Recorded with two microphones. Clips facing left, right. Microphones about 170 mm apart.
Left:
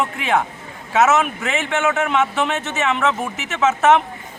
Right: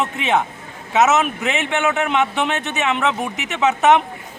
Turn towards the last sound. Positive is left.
turn(degrees=-15)  # may be behind; listen again after turning